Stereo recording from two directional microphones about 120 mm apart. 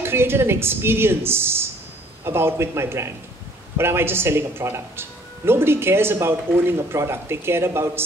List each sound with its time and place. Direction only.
0.0 s speech: 20° right (ahead or behind)